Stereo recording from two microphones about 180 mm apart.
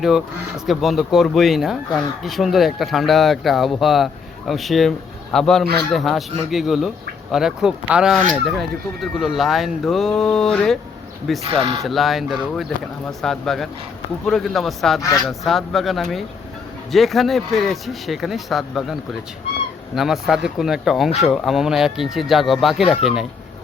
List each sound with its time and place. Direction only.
0.0 s speech: centre (ahead or behind)
20.0 s speech: centre (ahead or behind)
22.8 s speech: 30° left (ahead or behind)